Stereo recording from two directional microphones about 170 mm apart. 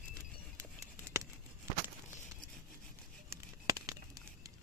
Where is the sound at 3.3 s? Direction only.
20° right (ahead or behind).